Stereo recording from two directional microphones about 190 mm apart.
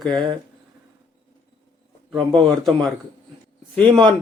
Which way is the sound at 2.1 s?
Centre (ahead or behind).